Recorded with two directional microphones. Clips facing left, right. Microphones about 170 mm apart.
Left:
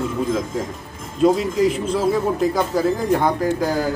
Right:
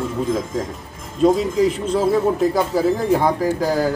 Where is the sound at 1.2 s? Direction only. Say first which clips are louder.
Right 1 dB; centre (ahead or behind).